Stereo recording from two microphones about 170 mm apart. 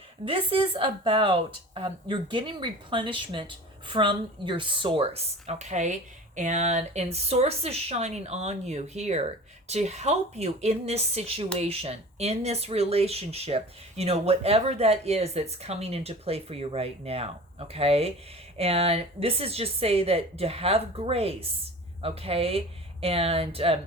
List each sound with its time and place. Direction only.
0.3 s speech: 30° right (ahead or behind)